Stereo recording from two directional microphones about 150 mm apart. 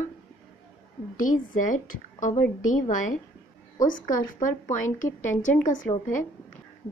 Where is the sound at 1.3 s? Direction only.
60° left (ahead or behind).